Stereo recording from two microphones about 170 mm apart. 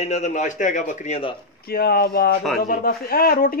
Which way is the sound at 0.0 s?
40° left (ahead or behind).